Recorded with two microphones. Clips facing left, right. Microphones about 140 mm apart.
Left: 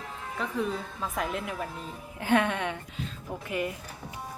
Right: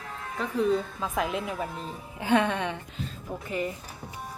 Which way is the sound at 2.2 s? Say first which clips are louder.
Right 1 dB; 20° right (ahead or behind).